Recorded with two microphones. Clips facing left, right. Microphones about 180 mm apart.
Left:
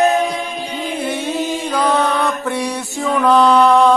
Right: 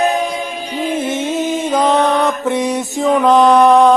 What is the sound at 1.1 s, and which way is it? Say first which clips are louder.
Mantra: right 3 dB; 20° right (ahead or behind).